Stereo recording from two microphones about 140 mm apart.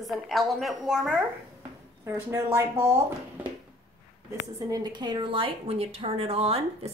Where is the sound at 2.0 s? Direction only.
20° right (ahead or behind).